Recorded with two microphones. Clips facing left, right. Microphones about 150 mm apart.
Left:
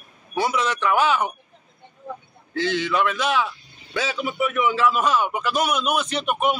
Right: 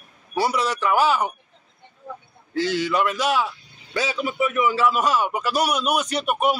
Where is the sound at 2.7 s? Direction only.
10° right (ahead or behind).